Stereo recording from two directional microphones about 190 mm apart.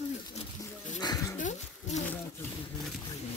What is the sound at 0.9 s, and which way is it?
Speech, 20° left (ahead or behind).